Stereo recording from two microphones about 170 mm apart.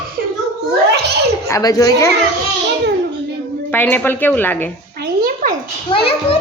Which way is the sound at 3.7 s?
10° left (ahead or behind).